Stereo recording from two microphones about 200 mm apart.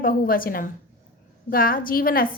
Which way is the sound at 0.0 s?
45° left (ahead or behind).